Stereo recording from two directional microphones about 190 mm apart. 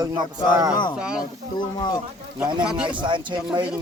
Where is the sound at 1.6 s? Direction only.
20° left (ahead or behind).